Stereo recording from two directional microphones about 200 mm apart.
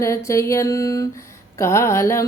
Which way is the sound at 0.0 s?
15° left (ahead or behind).